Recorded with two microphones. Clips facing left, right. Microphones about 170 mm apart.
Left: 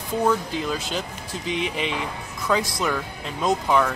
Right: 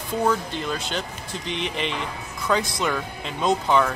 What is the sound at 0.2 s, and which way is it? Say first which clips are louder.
Speech: left 1 dB; 5° left (ahead or behind).